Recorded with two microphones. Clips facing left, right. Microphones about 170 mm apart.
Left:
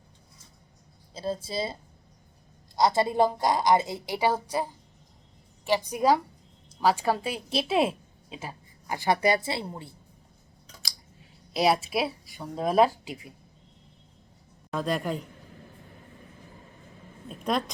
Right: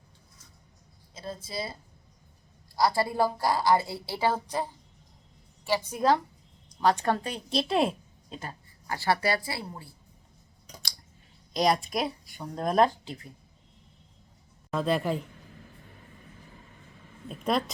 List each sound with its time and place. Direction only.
1.1 s a woman's voice: 30° left (ahead or behind); by 8.5 s 5° left (ahead or behind)
8.9 s a woman's voice: 15° left (ahead or behind)
11.5 s speech: 5° left (ahead or behind)
14.7 s speech: centre (ahead or behind)
17.2 s a sound: centre (ahead or behind)